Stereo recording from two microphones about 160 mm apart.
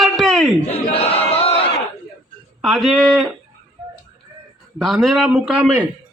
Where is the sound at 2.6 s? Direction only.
Centre (ahead or behind).